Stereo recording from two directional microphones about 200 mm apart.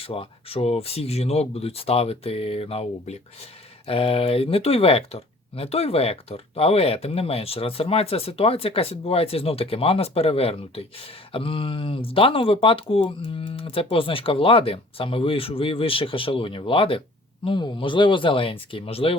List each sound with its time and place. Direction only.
0.0 s speech: 30° left (ahead or behind)